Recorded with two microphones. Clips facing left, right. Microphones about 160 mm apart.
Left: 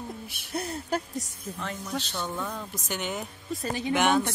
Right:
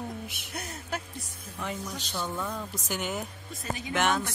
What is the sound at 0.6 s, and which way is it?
Speech, 35° left (ahead or behind).